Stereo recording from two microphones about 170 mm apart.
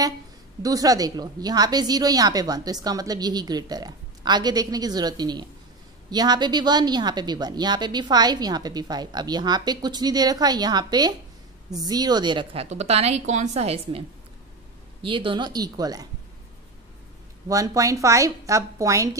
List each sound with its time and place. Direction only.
0.6 s a woman's voice: 20° right (ahead or behind)
12.6 s a woman's voice: 40° right (ahead or behind); by 16.1 s 20° right (ahead or behind)
17.5 s a woman's voice: 20° right (ahead or behind)